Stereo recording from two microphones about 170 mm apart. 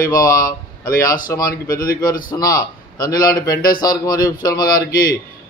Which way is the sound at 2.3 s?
20° left (ahead or behind).